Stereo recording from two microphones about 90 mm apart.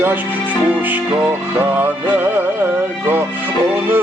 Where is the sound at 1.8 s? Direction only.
20° right (ahead or behind).